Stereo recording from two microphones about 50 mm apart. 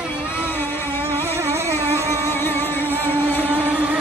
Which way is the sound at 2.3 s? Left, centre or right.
Left.